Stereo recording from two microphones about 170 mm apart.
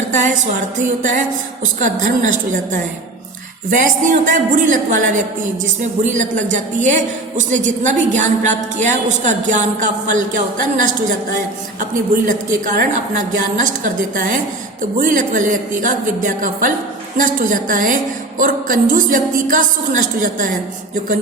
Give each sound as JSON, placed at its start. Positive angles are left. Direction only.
{"t": 0.8, "sound": "a woman's voice", "side_deg": -50}
{"t": 3.7, "sound": "a woman's voice", "side_deg": -50}